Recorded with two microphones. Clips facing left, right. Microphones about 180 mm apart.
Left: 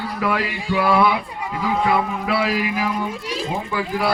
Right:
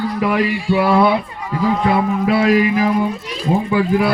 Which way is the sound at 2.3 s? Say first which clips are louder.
Right 7 dB; 45° right (ahead or behind).